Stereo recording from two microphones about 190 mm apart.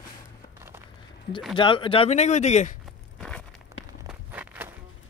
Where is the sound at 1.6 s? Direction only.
25° left (ahead or behind).